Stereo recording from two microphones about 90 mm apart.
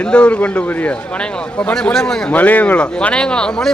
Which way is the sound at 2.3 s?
15° left (ahead or behind).